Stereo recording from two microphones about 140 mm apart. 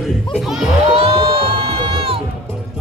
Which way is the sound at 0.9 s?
40° right (ahead or behind).